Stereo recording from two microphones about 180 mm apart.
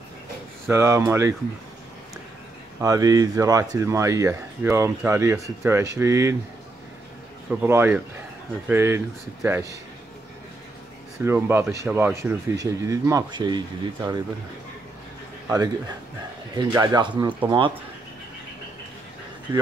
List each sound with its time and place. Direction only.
0.7 s speech: 15° right (ahead or behind)
2.8 s speech: 20° right (ahead or behind)
7.6 s speech: 15° right (ahead or behind)
11.2 s speech: 10° right (ahead or behind)
15.4 s speech: 20° right (ahead or behind)